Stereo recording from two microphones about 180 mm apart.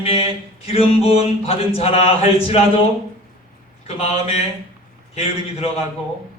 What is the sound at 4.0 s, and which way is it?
Speech, 35° left (ahead or behind).